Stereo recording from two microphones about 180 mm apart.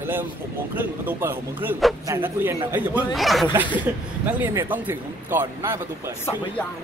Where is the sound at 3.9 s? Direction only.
10° right (ahead or behind).